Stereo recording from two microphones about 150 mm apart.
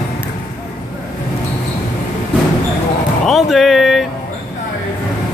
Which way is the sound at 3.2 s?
Centre (ahead or behind).